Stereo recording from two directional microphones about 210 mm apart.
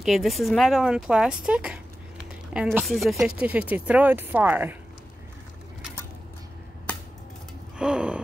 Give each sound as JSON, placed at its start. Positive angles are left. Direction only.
{"t": 0.0, "sound": "speech", "side_deg": 0}
{"t": 7.7, "sound": "gasp", "side_deg": -5}